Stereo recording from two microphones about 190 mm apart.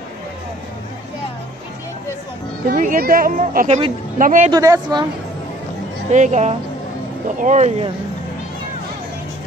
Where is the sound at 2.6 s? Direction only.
45° right (ahead or behind).